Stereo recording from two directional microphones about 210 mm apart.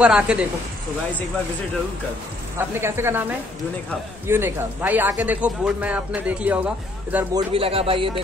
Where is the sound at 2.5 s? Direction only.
10° right (ahead or behind).